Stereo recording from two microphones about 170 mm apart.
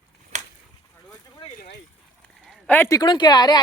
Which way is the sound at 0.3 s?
45° right (ahead or behind).